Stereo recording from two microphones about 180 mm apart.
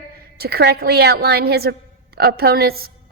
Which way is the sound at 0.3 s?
60° right (ahead or behind).